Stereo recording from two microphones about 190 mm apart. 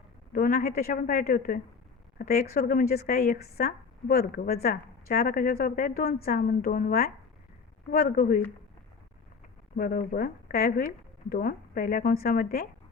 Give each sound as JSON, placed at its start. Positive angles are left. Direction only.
{"t": 0.3, "sound": "a woman's voice", "side_deg": 50}
{"t": 9.7, "sound": "a woman's voice", "side_deg": 50}